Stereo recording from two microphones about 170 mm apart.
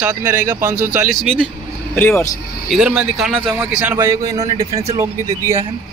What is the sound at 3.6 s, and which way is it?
A man's voice, 10° right (ahead or behind).